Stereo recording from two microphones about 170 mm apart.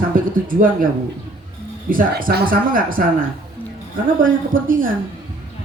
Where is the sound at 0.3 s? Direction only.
55° right (ahead or behind).